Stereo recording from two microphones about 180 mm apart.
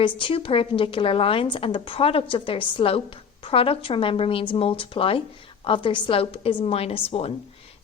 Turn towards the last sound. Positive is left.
turn(degrees=35)  # may be behind; listen again after turning